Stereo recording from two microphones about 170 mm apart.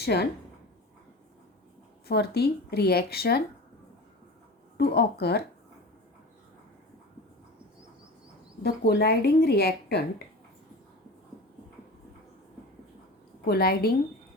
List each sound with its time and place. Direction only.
0.0 s a woman's voice: 70° left (ahead or behind)
2.0 s a woman's voice: 65° left (ahead or behind)
4.8 s a woman's voice: 75° left (ahead or behind)
8.6 s a woman's voice: 75° left (ahead or behind)
13.4 s a woman's voice: 65° left (ahead or behind)